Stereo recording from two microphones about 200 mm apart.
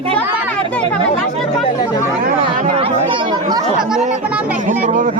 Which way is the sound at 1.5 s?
25° left (ahead or behind).